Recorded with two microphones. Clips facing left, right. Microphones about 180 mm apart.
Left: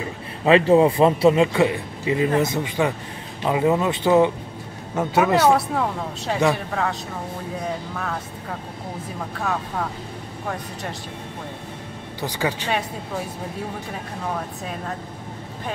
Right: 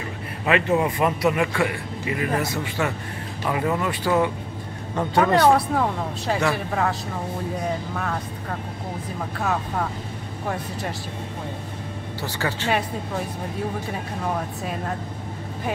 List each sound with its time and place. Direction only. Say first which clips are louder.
0.5 s a man's voice: left 6 dB; 30° left (ahead or behind)
4.9 s speech: left 1 dB; 5° left (ahead or behind)
8.0 s speech: right 1 dB; centre (ahead or behind)
12.2 s speech: left 3 dB; 15° left (ahead or behind)